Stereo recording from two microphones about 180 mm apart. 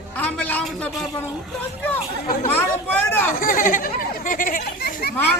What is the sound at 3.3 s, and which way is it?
Speech, 50° left (ahead or behind).